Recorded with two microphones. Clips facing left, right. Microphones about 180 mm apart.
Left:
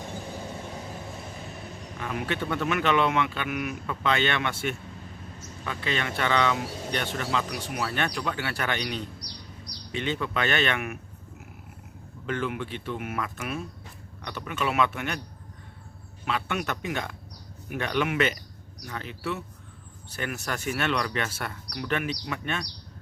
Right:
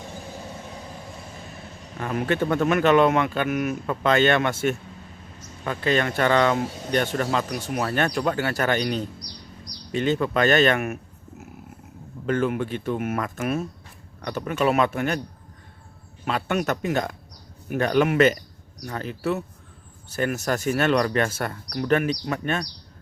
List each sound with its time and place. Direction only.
2.0 s speech: 45° right (ahead or behind)
12.2 s speech: 45° right (ahead or behind)
16.2 s speech: 40° right (ahead or behind)